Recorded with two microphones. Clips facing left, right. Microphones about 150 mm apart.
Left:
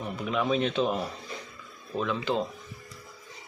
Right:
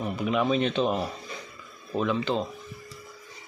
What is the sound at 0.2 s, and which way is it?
Speech, 5° right (ahead or behind).